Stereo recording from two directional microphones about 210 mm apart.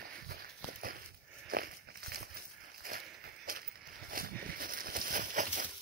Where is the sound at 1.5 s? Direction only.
45° right (ahead or behind).